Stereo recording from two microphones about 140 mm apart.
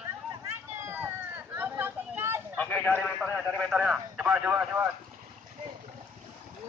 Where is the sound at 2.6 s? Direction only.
10° left (ahead or behind).